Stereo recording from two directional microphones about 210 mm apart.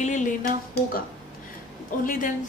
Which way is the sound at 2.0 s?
40° left (ahead or behind).